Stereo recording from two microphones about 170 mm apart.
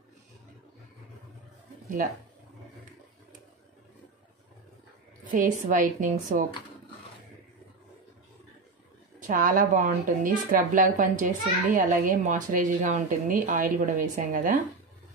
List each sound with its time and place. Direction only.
5.2 s a woman's voice: 50° right (ahead or behind)
9.2 s a woman's voice: 50° right (ahead or behind)